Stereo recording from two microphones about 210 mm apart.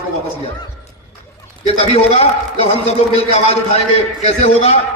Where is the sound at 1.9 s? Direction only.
30° left (ahead or behind).